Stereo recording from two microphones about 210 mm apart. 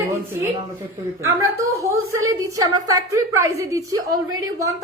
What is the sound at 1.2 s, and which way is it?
A woman's voice, 15° right (ahead or behind).